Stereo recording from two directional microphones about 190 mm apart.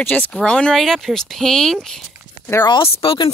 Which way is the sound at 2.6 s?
30° left (ahead or behind).